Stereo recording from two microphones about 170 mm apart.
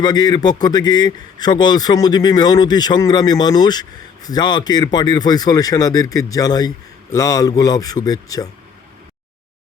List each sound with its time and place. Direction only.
0.0 s a man's voice: 25° left (ahead or behind)